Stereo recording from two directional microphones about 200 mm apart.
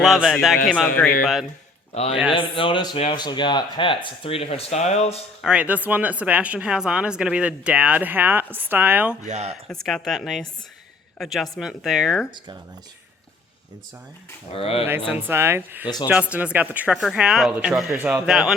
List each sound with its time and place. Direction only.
0.0 s speech: centre (ahead or behind)
1.9 s speech: 30° left (ahead or behind)
5.4 s speech: 5° right (ahead or behind)
9.2 s speech: 35° right (ahead or behind)
9.6 s speech: centre (ahead or behind)
14.5 s speech: 30° left (ahead or behind)
15.1 s speech: 10° right (ahead or behind)